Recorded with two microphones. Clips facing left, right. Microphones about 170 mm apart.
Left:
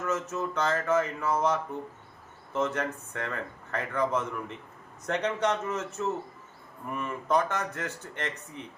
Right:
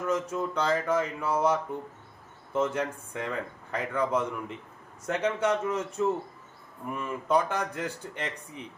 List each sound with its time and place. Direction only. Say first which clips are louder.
0.0 s speech: right 2 dB; 10° right (ahead or behind)